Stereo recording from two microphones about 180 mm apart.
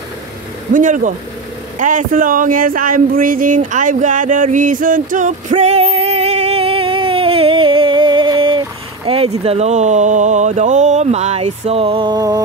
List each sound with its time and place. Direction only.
0.7 s speech: 45° right (ahead or behind); by 12.4 s 20° right (ahead or behind)